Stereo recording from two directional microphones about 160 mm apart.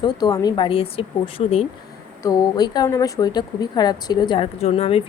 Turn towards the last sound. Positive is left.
turn(degrees=40)  # may be behind; listen again after turning